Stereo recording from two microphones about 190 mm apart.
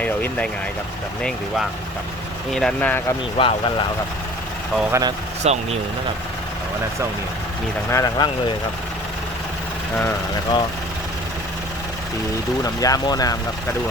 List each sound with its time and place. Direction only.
0.0 s vehicle: 5° left (ahead or behind)
2.5 s speech: 5° left (ahead or behind)
3.3 s speech: 25° left (ahead or behind)
4.8 s speech: 15° right (ahead or behind)
5.4 s speech: 35° right (ahead or behind)
7.9 s speech: 15° left (ahead or behind)
10.0 s speech: 15° left (ahead or behind)
12.6 s speech: 20° left (ahead or behind)